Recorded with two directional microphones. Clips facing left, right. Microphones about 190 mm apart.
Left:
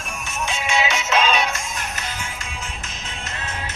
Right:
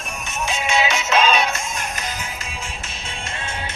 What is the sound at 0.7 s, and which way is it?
Music, 35° right (ahead or behind).